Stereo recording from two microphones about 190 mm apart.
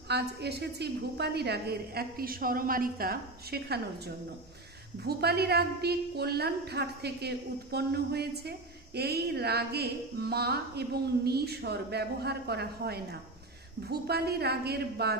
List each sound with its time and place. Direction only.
0.1 s a woman's voice: 60° right (ahead or behind)